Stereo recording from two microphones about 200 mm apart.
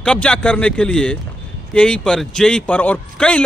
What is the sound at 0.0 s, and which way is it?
A man's voice, 5° left (ahead or behind).